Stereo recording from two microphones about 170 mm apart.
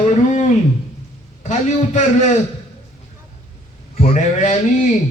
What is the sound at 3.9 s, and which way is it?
Speech, 40° left (ahead or behind).